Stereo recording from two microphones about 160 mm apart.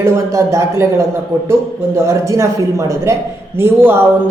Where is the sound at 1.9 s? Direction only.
20° right (ahead or behind).